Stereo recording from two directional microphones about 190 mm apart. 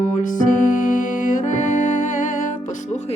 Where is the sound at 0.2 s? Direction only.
45° left (ahead or behind).